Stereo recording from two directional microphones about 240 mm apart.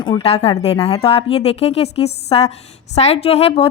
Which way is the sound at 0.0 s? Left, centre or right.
Left.